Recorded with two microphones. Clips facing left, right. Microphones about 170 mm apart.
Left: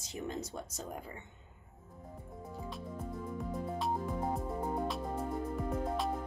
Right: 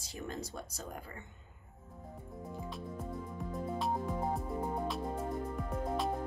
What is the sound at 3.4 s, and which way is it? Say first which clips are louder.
Music: even; centre (ahead or behind).